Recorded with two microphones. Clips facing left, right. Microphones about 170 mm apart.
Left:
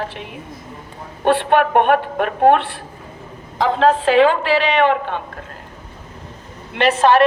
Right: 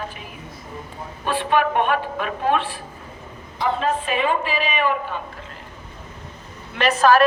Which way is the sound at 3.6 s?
90° left.